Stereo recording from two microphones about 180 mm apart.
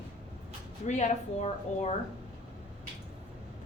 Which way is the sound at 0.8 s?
40° left (ahead or behind).